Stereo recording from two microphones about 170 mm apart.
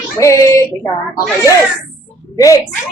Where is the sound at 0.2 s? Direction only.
20° left (ahead or behind).